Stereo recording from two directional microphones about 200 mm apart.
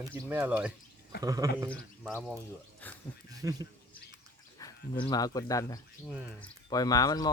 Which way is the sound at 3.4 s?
20° right (ahead or behind).